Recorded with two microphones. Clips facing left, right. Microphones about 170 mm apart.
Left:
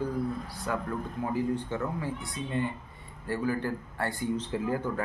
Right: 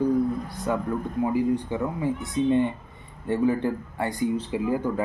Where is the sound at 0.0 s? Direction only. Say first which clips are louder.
Right 8 dB; 20° right (ahead or behind).